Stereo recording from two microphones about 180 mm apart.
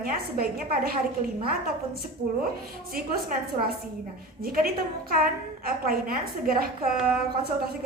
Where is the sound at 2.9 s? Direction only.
55° right (ahead or behind).